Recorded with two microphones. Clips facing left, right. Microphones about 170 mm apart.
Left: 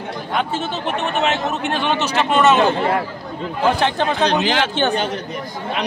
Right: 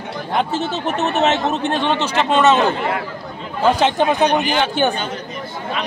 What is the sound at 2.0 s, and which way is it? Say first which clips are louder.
Speech: right 1 dB; 20° right (ahead or behind).